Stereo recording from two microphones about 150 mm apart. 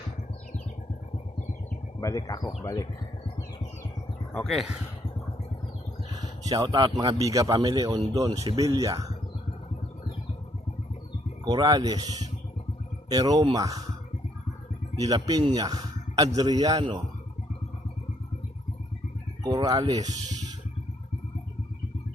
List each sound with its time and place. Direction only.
2.0 s speech: 20° left (ahead or behind)
4.4 s speech: centre (ahead or behind)
6.4 s a man's voice: 25° right (ahead or behind)
11.4 s a man's voice: 30° right (ahead or behind)
14.9 s a man's voice: 25° right (ahead or behind)
19.4 s speech: 25° right (ahead or behind)